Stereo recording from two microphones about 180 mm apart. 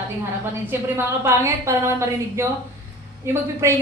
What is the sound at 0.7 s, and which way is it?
A woman's voice, 10° right (ahead or behind).